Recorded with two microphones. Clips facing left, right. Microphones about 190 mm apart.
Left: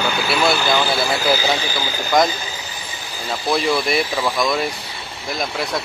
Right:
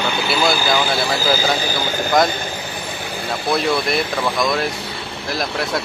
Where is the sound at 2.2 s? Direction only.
55° right (ahead or behind).